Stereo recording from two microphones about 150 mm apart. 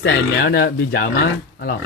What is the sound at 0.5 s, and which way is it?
Speech, 90° left.